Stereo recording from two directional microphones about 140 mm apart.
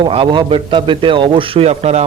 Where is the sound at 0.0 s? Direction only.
35° right (ahead or behind).